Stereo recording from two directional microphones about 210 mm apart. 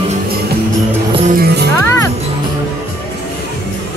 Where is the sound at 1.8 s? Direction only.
15° left (ahead or behind).